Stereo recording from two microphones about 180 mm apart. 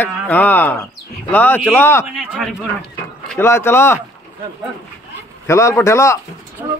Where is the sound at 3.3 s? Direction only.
15° left (ahead or behind).